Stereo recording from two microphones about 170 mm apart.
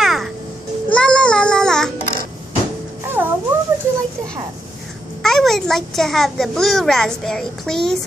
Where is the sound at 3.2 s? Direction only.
10° right (ahead or behind).